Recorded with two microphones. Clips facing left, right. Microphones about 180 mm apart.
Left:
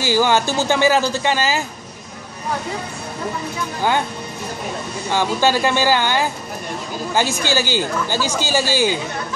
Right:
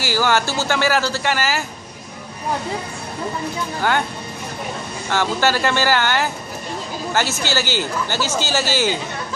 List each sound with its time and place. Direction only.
0.0 s speech: 15° left (ahead or behind)
5.1 s speech: 15° left (ahead or behind)